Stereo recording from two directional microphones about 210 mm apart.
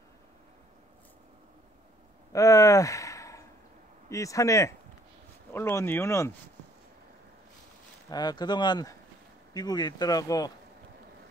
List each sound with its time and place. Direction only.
2.3 s a sound: 15° left (ahead or behind)
4.1 s speech: 15° left (ahead or behind)
8.1 s speech: 20° left (ahead or behind)